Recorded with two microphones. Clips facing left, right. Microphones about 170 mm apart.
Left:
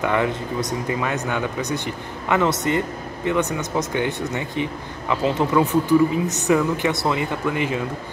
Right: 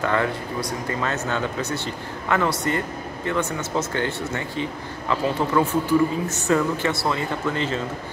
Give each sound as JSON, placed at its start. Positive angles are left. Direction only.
{"t": 0.0, "sound": "speech", "side_deg": 15}